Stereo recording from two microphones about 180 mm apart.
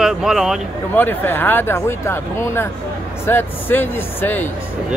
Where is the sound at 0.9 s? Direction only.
10° left (ahead or behind).